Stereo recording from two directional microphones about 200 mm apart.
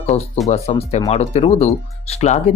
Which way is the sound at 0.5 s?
30° left (ahead or behind).